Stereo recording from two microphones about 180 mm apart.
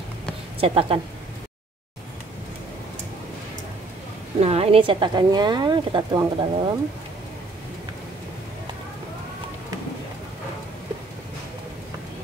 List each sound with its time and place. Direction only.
0.6 s a woman's voice: 30° right (ahead or behind)
4.4 s a woman's voice: 35° right (ahead or behind)